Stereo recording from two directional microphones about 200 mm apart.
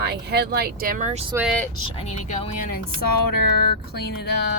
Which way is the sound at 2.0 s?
35° left (ahead or behind).